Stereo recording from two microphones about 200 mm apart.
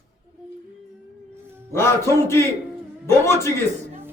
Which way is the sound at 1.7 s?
15° left (ahead or behind).